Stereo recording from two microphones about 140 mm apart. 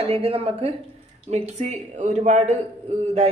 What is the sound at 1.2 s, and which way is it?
A woman's voice, 55° right (ahead or behind).